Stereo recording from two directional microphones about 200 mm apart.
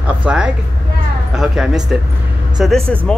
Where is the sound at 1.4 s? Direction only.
Centre (ahead or behind).